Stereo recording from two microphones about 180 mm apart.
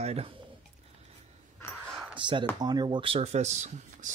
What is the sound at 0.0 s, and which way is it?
Speech, 35° right (ahead or behind).